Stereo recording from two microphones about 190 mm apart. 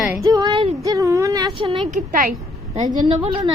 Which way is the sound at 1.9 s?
45° right (ahead or behind).